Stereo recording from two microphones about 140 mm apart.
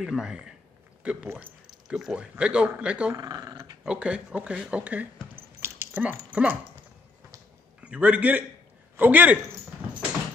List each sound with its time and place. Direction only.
0.0 s speech: 5° right (ahead or behind)
1.0 s a sound: 10° right (ahead or behind)
2.0 s speech: 5° right (ahead or behind)
3.2 s speech: 30° right (ahead or behind)
3.8 s speech: 5° right (ahead or behind)
7.8 s speech: 10° right (ahead or behind)